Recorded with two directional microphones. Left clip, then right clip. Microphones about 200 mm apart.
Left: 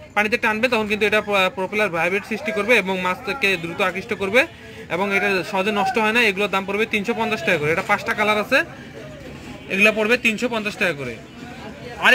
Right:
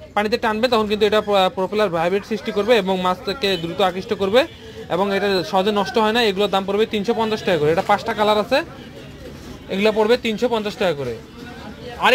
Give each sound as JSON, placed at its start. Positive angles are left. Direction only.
{"t": 0.2, "sound": "speech", "side_deg": -25}
{"t": 9.7, "sound": "speech", "side_deg": -30}